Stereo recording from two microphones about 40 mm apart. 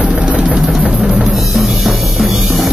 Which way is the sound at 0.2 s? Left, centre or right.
Centre.